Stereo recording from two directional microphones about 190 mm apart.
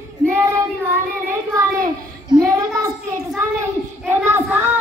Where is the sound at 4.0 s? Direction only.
10° right (ahead or behind).